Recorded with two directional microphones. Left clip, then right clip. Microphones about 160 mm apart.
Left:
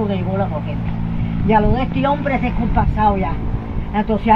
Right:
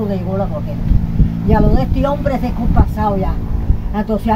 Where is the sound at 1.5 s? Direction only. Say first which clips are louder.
Left 1 dB; 35° right (ahead or behind).